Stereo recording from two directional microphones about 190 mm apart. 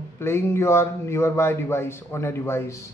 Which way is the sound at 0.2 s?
15° left (ahead or behind).